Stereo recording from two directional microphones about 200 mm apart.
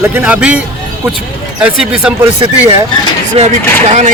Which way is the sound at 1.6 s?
5° right (ahead or behind).